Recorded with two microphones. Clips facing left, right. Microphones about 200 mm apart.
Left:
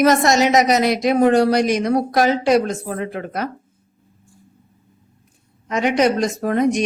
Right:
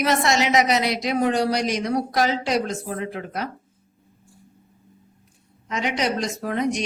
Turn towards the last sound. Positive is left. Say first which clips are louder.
# left 6 dB
turn(degrees=50)  # may be behind; listen again after turning